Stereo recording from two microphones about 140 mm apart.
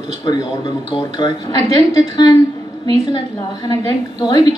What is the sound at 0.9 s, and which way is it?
Speech, 30° left (ahead or behind).